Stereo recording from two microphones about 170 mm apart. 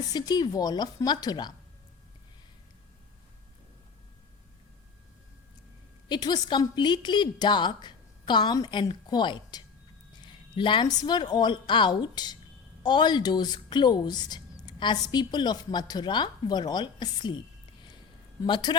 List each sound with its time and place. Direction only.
0.1 s speech: 25° left (ahead or behind)
6.1 s a woman's voice: 25° left (ahead or behind)
18.4 s speech: 25° left (ahead or behind)